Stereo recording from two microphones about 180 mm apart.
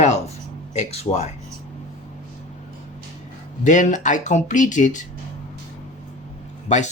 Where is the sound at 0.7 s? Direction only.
35° left (ahead or behind).